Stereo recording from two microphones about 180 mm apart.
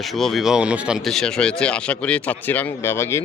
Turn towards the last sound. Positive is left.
turn(degrees=15)  # may be behind; listen again after turning